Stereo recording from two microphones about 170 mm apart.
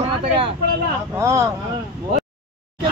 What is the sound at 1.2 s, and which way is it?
Speech, 15° right (ahead or behind).